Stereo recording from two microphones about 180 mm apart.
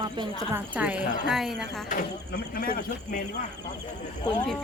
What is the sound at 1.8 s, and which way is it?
Speech, 55° left (ahead or behind).